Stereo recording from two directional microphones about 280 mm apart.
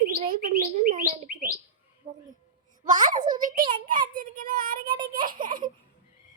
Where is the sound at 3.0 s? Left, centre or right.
Right.